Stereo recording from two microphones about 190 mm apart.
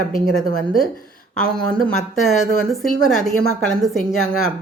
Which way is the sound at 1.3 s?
5° left (ahead or behind).